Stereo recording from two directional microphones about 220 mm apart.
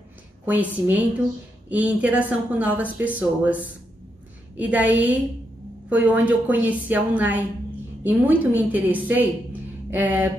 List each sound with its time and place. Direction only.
0.5 s speech: 10° right (ahead or behind)